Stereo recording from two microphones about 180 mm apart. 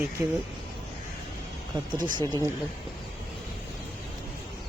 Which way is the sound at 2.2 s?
20° right (ahead or behind).